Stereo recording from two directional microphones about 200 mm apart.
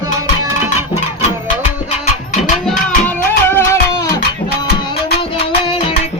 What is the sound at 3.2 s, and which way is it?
Music, 10° left (ahead or behind).